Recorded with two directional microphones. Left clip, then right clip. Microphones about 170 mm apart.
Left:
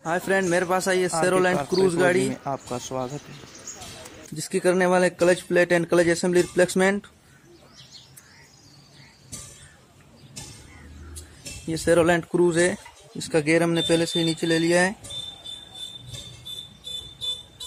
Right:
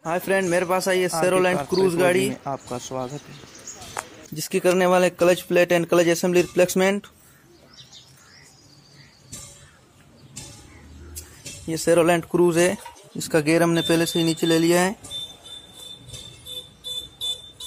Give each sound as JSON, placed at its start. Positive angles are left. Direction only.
{"t": 0.0, "sound": "a man's voice", "side_deg": 0}
{"t": 11.6, "sound": "a man's voice", "side_deg": 0}